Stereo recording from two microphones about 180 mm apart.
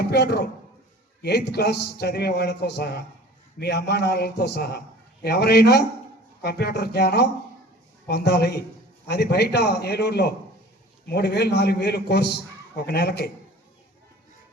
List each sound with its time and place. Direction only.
0.0 s a man's voice: 65° left (ahead or behind)